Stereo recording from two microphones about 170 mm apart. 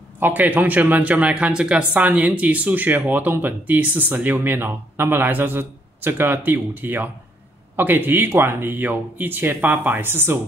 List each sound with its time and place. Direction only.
0.2 s speech: 10° right (ahead or behind)